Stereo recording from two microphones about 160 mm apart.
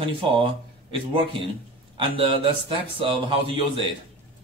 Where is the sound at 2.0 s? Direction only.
35° right (ahead or behind).